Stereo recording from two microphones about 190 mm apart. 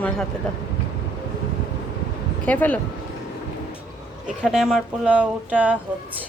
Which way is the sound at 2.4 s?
10° left (ahead or behind).